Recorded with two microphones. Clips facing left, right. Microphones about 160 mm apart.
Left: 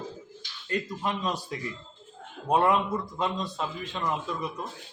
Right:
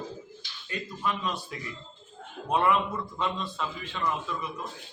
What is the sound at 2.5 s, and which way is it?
A man's voice, 40° left (ahead or behind).